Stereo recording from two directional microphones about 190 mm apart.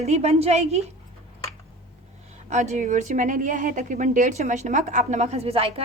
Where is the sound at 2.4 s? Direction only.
35° right (ahead or behind).